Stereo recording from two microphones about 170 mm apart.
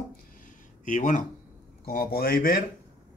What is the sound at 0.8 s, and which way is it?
Speech, 50° left (ahead or behind).